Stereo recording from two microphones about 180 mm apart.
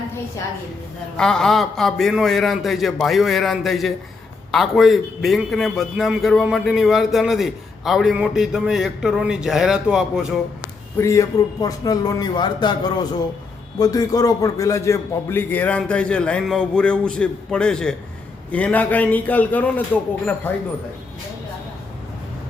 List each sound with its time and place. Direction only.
1.1 s a man's voice: 5° left (ahead or behind)
10.9 s a man's voice: 15° left (ahead or behind)